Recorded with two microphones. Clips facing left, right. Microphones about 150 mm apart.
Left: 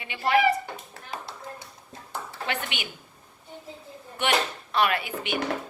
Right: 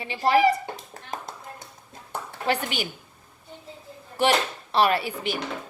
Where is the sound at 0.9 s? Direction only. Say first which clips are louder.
Right 2 dB; 45° right (ahead or behind).